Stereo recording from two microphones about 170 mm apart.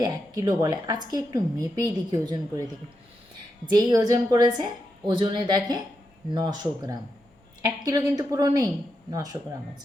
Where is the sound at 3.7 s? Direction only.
25° right (ahead or behind).